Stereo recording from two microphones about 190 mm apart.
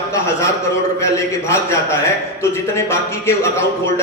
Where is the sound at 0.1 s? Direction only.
15° left (ahead or behind).